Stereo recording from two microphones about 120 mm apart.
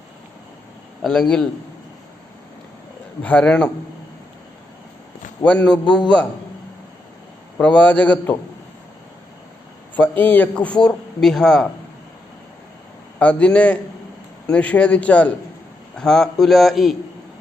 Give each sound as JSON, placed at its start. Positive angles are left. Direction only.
{"t": 1.0, "sound": "a man's voice", "side_deg": 0}
{"t": 3.2, "sound": "a man's voice", "side_deg": 10}
{"t": 5.4, "sound": "a man's voice", "side_deg": 10}
{"t": 5.8, "sound": "a man's voice", "side_deg": 40}
{"t": 7.6, "sound": "a man's voice", "side_deg": 10}
{"t": 9.9, "sound": "a man's voice", "side_deg": 15}
{"t": 13.1, "sound": "a man's voice", "side_deg": 10}